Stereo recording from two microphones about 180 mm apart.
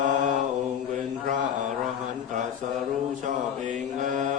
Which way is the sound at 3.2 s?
45° right (ahead or behind).